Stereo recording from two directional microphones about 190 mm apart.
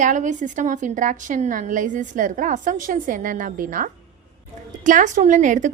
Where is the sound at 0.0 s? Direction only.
40° right (ahead or behind).